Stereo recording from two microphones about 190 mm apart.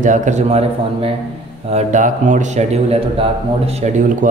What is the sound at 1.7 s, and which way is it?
A man's voice, 40° right (ahead or behind).